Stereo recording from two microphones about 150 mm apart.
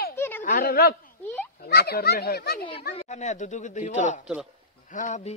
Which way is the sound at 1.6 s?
90° left.